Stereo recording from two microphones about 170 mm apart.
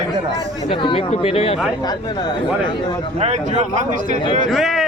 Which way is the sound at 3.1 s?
40° right (ahead or behind).